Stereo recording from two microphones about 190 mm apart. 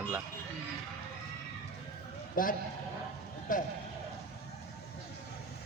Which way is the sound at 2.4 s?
45° left (ahead or behind).